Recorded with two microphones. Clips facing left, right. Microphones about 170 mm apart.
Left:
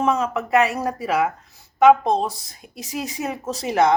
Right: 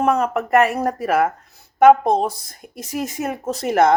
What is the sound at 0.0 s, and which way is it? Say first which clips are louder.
Speech: right 3 dB; 60° right (ahead or behind).